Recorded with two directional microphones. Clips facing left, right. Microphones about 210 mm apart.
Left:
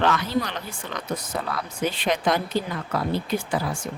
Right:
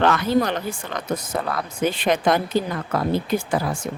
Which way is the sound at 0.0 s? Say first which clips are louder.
Right 5 dB; 50° right (ahead or behind).